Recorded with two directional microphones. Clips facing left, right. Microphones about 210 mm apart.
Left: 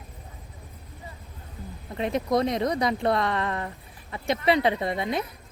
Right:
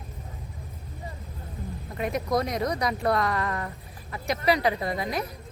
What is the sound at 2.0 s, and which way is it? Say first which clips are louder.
Speech: left 2 dB; 25° left (ahead or behind).